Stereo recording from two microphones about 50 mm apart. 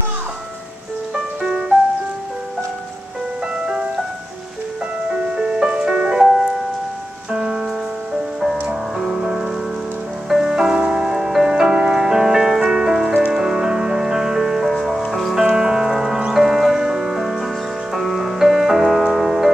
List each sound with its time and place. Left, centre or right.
1.1 s music: centre
3.6 s music: centre
5.4 s music: centre
8.6 s music: centre
15.4 s music: centre